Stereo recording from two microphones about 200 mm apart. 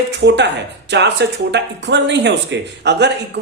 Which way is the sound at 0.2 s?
60° right (ahead or behind).